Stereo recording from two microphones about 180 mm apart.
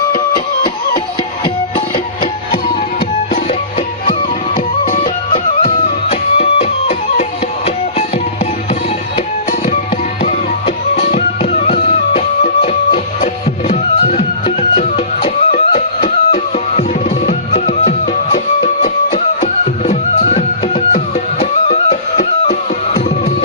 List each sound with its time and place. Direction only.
4.5 s music: 30° left (ahead or behind)
9.1 s music: 35° left (ahead or behind)
10.9 s music: 35° left (ahead or behind)
19.9 s music: 35° left (ahead or behind)